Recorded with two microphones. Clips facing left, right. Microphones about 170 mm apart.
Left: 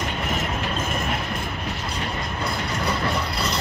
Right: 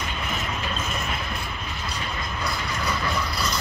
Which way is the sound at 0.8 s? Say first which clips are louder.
Left 4 dB; 55° left (ahead or behind).